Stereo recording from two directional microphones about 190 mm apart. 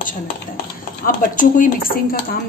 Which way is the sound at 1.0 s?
45° left (ahead or behind).